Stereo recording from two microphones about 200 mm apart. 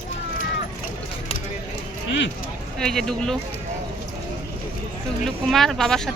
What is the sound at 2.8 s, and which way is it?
Speech, centre (ahead or behind).